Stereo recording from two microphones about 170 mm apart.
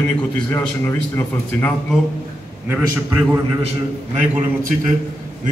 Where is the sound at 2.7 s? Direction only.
20° right (ahead or behind).